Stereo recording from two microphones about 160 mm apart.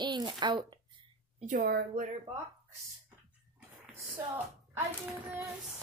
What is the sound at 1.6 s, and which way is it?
Speech, 70° right (ahead or behind).